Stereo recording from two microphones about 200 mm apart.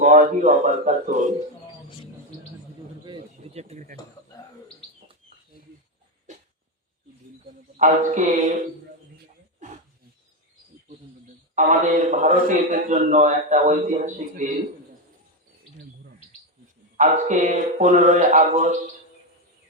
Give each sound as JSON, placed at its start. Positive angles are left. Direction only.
{"t": 0.0, "sound": "a man's voice", "side_deg": -40}
{"t": 3.0, "sound": "a sound", "side_deg": -25}
{"t": 7.8, "sound": "a man's voice", "side_deg": -40}
{"t": 11.5, "sound": "a man's voice", "side_deg": -40}
{"t": 17.0, "sound": "a man's voice", "side_deg": -40}